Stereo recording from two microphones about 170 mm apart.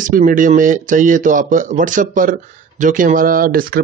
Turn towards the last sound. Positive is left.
turn(degrees=-60)  # may be behind; listen again after turning